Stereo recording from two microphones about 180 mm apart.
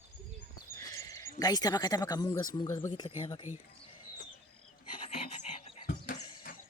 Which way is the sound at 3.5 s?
45° left (ahead or behind).